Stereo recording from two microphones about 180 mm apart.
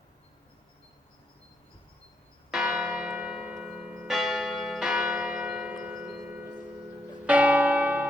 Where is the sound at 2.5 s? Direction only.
5° right (ahead or behind).